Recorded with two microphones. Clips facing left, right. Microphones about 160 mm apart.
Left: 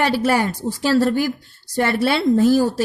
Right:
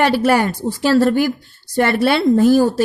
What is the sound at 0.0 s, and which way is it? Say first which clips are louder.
A woman's voice: right 3 dB; 65° right (ahead or behind).